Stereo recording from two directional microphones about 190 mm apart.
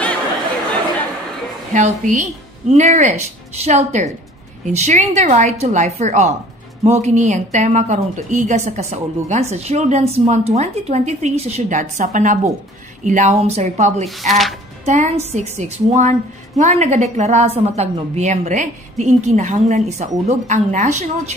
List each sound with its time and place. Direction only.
1.7 s a woman's voice: 40° right (ahead or behind)
14.0 s speech: centre (ahead or behind)
14.9 s a woman's voice: 35° right (ahead or behind)